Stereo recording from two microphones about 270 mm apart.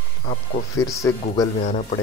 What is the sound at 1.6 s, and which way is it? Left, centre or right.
Speech, left.